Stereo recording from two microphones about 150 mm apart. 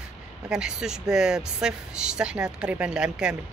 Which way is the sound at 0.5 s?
5° right (ahead or behind).